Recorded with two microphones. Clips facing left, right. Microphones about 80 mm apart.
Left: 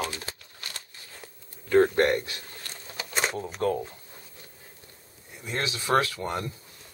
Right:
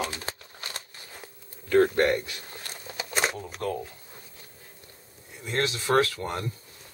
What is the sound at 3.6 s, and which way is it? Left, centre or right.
Speech, centre.